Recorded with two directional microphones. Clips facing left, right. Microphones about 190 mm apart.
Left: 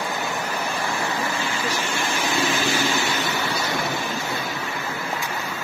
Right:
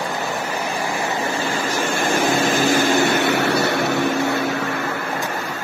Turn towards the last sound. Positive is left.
turn(degrees=-65)  # may be behind; listen again after turning